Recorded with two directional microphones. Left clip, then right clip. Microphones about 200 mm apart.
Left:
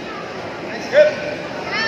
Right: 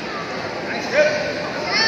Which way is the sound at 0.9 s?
60° left (ahead or behind).